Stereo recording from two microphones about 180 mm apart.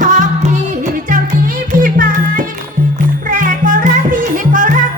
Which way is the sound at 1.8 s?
50° right (ahead or behind).